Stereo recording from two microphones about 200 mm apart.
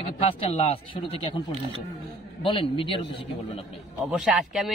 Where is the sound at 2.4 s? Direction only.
25° left (ahead or behind).